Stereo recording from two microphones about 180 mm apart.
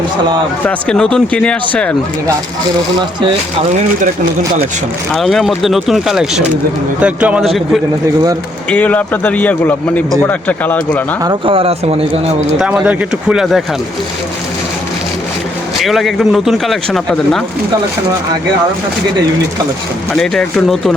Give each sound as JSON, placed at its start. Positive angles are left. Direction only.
{"t": 0.6, "sound": "speech", "side_deg": 5}
{"t": 5.1, "sound": "a man's voice", "side_deg": 0}
{"t": 11.2, "sound": "speech", "side_deg": -25}
{"t": 12.5, "sound": "speech", "side_deg": -5}
{"t": 15.8, "sound": "speech", "side_deg": 0}
{"t": 20.1, "sound": "speech", "side_deg": 5}